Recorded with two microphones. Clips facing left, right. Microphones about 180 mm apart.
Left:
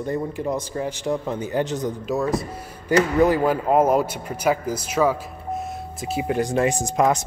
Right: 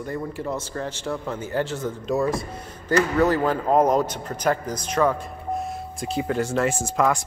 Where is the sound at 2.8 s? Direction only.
15° left (ahead or behind).